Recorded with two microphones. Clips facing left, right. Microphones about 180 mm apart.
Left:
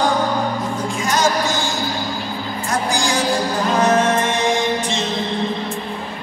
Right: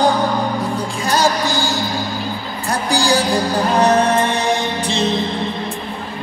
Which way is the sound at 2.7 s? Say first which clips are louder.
Right 4 dB; 35° right (ahead or behind).